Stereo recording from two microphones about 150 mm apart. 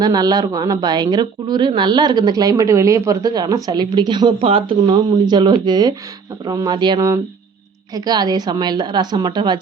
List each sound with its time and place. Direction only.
0.0 s a woman's voice: 25° right (ahead or behind)